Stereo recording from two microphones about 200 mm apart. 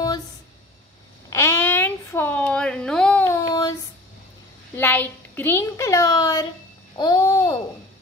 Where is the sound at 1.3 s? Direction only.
15° left (ahead or behind).